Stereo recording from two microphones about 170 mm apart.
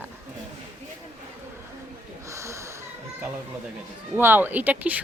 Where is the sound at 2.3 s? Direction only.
15° right (ahead or behind).